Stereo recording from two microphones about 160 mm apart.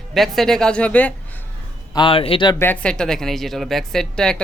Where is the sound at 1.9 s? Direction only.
30° left (ahead or behind).